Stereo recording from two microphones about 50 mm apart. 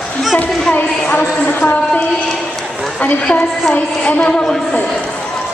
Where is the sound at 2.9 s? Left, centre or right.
Left.